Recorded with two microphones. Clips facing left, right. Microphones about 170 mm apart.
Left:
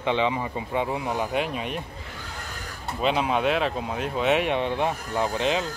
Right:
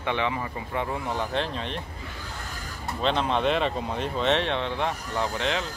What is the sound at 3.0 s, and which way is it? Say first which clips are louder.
Speech: left 1 dB; 5° left (ahead or behind).